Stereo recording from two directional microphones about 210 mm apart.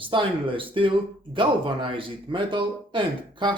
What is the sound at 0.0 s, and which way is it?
Speech, 25° right (ahead or behind).